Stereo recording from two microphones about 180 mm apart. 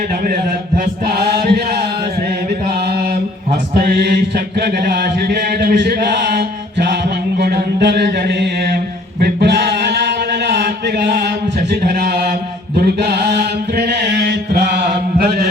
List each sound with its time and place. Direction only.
1.0 s chant: 60° right (ahead or behind)
3.8 s mantra: 65° right (ahead or behind)
4.6 s chant: 65° right (ahead or behind)
7.3 s mantra: 65° right (ahead or behind)
9.2 s chant: 65° right (ahead or behind)
11.7 s mantra: 60° right (ahead or behind)
12.7 s chant: 60° right (ahead or behind)